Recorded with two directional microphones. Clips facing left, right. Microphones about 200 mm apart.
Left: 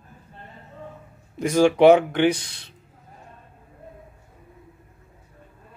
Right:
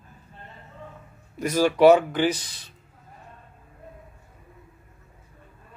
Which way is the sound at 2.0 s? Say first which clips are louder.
Left 3 dB; 65° left (ahead or behind).